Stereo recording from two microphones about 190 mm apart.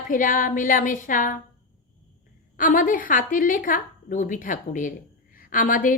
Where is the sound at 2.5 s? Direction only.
45° left (ahead or behind).